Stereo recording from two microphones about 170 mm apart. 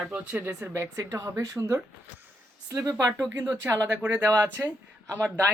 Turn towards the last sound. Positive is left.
turn(degrees=-15)  # may be behind; listen again after turning